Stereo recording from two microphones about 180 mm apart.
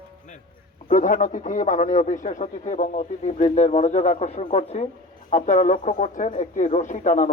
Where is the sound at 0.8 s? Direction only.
45° left (ahead or behind).